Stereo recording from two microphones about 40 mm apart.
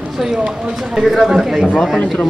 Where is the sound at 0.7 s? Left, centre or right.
Centre.